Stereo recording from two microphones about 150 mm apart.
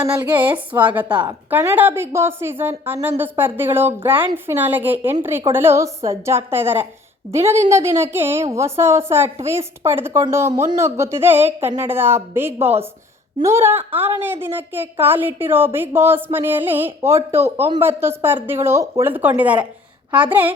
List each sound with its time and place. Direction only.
0.0 s a woman's voice: 10° right (ahead or behind)
12.5 s a woman's voice: 40° right (ahead or behind)
13.4 s a woman's voice: 15° right (ahead or behind)